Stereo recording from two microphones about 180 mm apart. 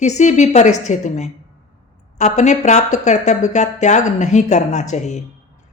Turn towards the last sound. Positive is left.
turn(degrees=40)  # may be behind; listen again after turning